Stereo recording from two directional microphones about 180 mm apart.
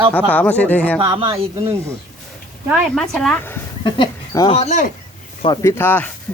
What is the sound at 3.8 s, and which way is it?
Speech, 25° left (ahead or behind).